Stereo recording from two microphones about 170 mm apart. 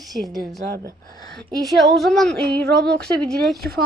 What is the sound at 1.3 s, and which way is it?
A woman's voice, centre (ahead or behind).